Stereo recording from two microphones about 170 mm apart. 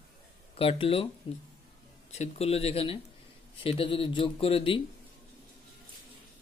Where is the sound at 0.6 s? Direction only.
35° left (ahead or behind).